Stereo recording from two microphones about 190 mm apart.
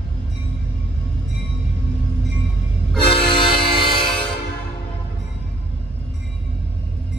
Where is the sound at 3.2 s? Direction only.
25° left (ahead or behind).